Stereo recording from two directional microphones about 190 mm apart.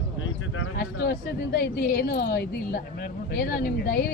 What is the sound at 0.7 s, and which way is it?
A woman's voice, 55° left (ahead or behind).